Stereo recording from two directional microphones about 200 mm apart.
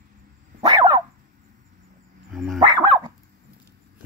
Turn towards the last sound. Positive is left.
turn(degrees=-20)  # may be behind; listen again after turning